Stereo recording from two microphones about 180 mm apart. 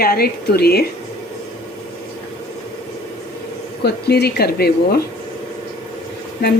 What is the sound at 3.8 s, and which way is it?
Speech, 65° left (ahead or behind).